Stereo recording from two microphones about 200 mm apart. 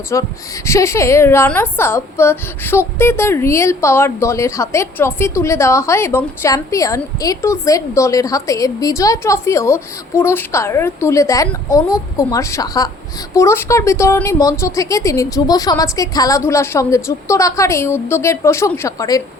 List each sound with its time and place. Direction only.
0.1 s a woman's voice: 15° left (ahead or behind)